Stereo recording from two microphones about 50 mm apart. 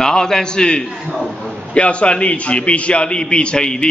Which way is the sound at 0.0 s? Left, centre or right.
Centre.